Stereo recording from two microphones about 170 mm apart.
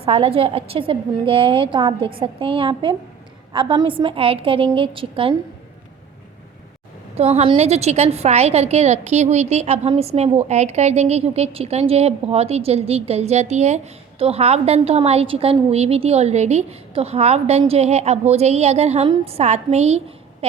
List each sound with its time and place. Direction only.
0.0 s a woman's voice: 35° right (ahead or behind)
7.2 s a woman's voice: 35° right (ahead or behind)